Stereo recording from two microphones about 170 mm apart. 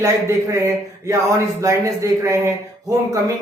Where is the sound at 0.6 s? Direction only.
15° right (ahead or behind).